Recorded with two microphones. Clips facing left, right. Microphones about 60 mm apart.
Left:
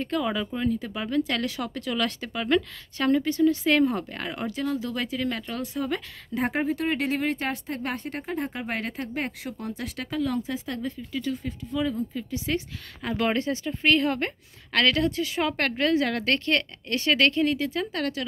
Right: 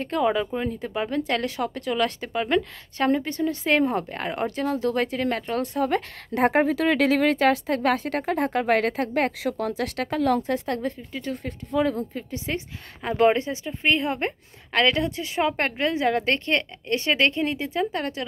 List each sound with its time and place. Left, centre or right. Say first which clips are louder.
0.0 s speech: right 4 dB; right
4.5 s speech: right 2 dB; right
6.3 s speech: right 6 dB; right
10.0 s speech: right 5 dB; right
11.3 s speech: right 4 dB; right
12.2 s speech: left 1 dB; right